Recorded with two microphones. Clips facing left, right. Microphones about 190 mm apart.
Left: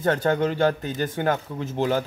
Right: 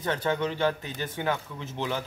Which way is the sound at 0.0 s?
45° left (ahead or behind).